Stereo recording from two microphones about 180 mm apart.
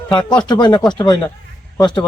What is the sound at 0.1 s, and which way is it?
Speech, 25° left (ahead or behind).